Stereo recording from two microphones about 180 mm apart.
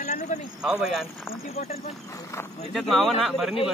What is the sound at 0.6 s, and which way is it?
Speech, 5° right (ahead or behind).